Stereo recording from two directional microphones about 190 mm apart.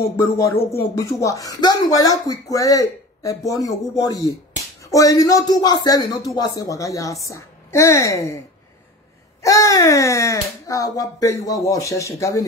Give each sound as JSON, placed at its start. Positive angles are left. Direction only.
{"t": 0.9, "sound": "speech", "side_deg": 15}
{"t": 9.4, "sound": "speech", "side_deg": 15}